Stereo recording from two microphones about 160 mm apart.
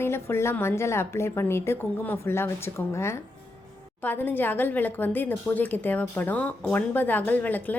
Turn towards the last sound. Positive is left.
turn(degrees=10)  # may be behind; listen again after turning